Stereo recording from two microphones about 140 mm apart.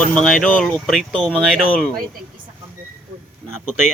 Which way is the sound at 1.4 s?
5° right (ahead or behind).